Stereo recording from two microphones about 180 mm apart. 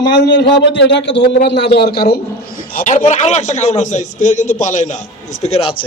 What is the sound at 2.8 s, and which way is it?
A man's voice, 45° left (ahead or behind).